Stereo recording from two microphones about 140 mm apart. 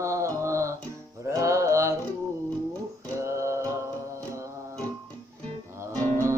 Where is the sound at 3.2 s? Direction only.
20° right (ahead or behind).